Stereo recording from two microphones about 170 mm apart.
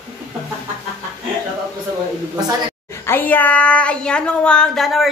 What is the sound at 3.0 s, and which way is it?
Speech, 10° left (ahead or behind).